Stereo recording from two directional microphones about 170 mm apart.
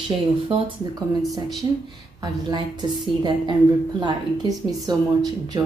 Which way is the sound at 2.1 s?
25° right (ahead or behind).